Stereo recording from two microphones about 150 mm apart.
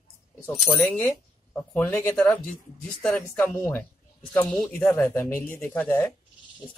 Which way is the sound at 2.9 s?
5° left (ahead or behind).